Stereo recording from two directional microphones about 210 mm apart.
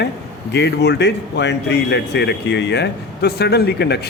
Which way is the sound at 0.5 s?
55° left (ahead or behind).